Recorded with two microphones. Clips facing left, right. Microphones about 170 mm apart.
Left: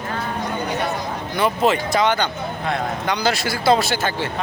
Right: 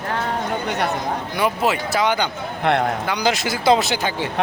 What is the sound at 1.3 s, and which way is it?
Speech, 10° right (ahead or behind).